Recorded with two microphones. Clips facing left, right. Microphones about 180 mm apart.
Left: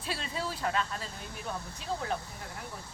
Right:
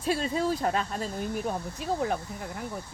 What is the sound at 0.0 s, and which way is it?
Speech, 45° right (ahead or behind).